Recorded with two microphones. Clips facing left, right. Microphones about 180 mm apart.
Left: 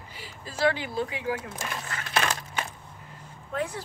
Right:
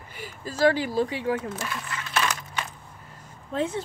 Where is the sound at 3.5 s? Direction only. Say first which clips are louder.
Right 4 dB; 25° right (ahead or behind).